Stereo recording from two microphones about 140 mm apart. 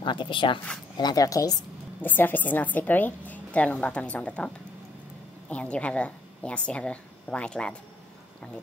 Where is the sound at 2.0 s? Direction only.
15° left (ahead or behind).